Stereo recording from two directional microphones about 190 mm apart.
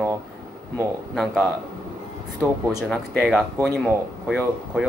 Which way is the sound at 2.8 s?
Centre (ahead or behind).